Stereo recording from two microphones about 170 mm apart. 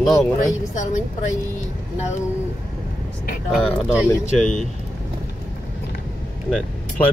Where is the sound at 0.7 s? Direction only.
45° left (ahead or behind).